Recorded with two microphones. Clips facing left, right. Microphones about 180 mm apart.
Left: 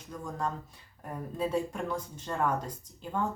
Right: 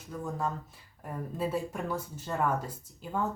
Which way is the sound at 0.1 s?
5° right (ahead or behind).